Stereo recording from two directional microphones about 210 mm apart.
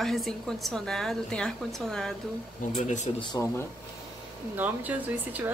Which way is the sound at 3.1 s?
25° left (ahead or behind).